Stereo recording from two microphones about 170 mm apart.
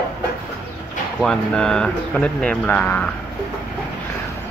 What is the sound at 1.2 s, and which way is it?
Speech, 5° left (ahead or behind).